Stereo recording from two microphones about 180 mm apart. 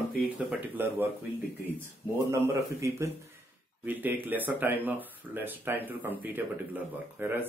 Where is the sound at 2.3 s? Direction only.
15° right (ahead or behind).